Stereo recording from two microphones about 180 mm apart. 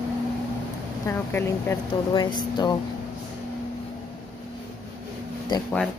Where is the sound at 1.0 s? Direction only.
15° left (ahead or behind).